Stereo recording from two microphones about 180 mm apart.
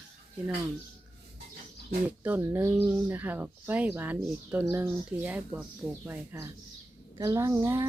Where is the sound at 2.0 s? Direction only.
10° right (ahead or behind).